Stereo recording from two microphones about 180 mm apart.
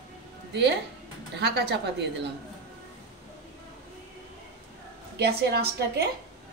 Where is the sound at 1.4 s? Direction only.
65° right (ahead or behind).